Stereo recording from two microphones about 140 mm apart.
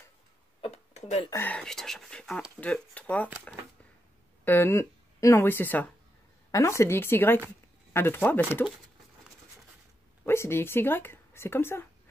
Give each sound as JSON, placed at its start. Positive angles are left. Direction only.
{"t": 0.6, "sound": "a sound", "side_deg": 50}
{"t": 1.3, "sound": "speech", "side_deg": 15}
{"t": 1.6, "sound": "speech", "side_deg": 5}
{"t": 4.5, "sound": "speech", "side_deg": 15}
{"t": 10.2, "sound": "speech", "side_deg": 15}